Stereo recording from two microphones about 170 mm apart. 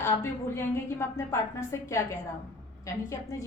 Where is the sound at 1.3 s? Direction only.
15° left (ahead or behind).